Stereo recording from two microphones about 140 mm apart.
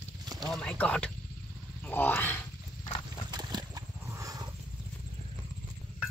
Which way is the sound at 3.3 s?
30° right (ahead or behind).